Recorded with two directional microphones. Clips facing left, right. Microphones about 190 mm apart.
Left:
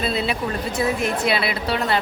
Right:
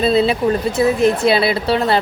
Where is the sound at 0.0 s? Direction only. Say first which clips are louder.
Right 9 dB; 30° right (ahead or behind).